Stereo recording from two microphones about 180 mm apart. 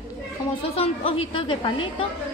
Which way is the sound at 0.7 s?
35° left (ahead or behind).